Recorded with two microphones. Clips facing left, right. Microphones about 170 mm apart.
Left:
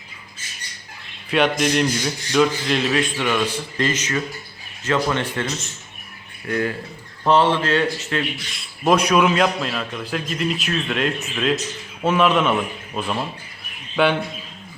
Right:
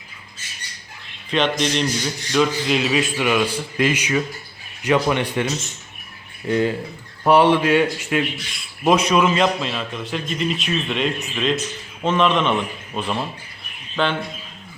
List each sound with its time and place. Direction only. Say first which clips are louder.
1.3 s a man's voice: left 2 dB; 10° left (ahead or behind); by 8.2 s 10° right (ahead or behind)
8.8 s a man's voice: even; centre (ahead or behind)